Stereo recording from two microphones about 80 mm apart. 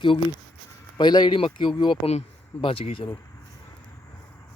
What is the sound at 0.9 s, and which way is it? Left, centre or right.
Speech, left.